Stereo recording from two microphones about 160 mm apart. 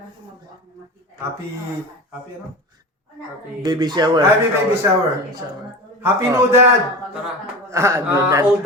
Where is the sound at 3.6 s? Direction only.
25° right (ahead or behind).